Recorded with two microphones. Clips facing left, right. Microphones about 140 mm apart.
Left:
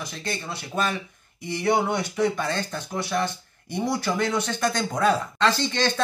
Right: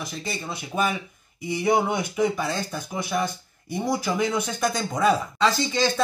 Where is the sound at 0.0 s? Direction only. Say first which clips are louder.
Even; 5° right (ahead or behind).